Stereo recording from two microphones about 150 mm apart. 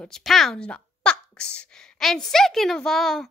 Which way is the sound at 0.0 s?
5° left (ahead or behind).